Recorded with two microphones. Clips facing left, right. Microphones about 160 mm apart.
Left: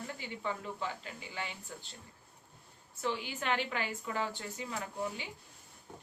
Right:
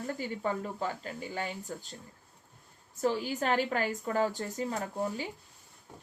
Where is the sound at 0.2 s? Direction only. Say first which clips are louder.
Right 6 dB; 45° right (ahead or behind).